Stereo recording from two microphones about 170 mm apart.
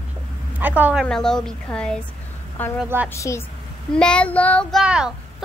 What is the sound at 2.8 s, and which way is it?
Speech, 10° right (ahead or behind).